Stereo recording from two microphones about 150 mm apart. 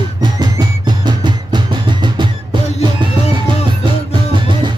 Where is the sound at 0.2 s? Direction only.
30° right (ahead or behind).